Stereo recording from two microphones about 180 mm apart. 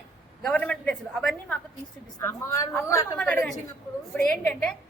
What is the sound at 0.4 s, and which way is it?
A woman's voice, 5° left (ahead or behind).